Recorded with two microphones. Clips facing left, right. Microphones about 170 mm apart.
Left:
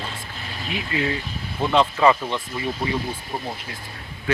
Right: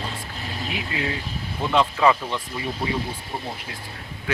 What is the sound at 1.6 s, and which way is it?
Speech, 20° left (ahead or behind).